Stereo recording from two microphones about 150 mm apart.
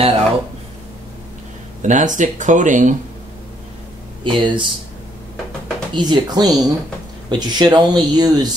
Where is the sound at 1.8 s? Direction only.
55° right (ahead or behind).